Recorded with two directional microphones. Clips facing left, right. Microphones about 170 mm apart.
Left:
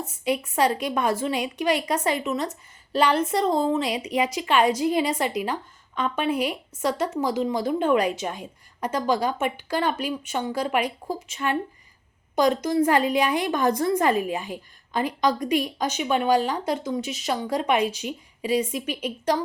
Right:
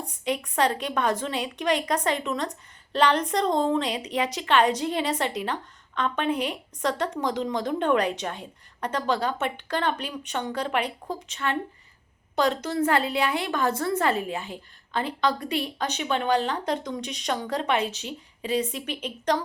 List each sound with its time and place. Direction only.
0.0 s a woman's voice: 5° left (ahead or behind)